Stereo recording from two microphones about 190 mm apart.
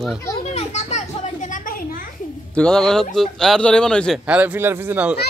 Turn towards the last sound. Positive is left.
turn(degrees=-10)  # may be behind; listen again after turning